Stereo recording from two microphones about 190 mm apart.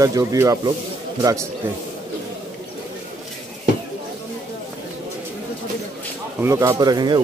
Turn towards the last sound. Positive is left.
turn(degrees=-25)  # may be behind; listen again after turning